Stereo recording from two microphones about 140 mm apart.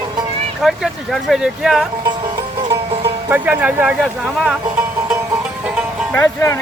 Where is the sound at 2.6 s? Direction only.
40° right (ahead or behind).